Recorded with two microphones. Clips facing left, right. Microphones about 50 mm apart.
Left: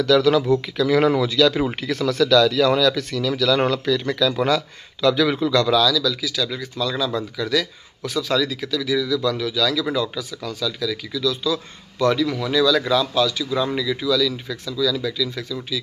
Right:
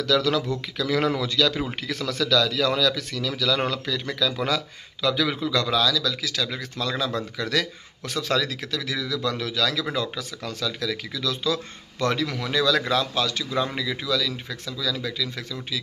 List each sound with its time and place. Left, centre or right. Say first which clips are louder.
0.0 s speech: left 6 dB; centre
5.5 s a man's voice: left 6 dB; centre
5.8 s speech: left 4 dB; right